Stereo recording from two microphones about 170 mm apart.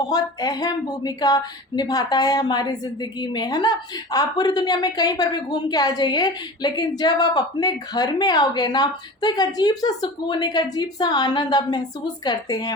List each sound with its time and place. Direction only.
0.0 s speech: 20° left (ahead or behind)